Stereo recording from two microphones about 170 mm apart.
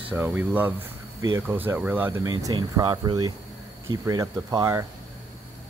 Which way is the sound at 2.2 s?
25° right (ahead or behind).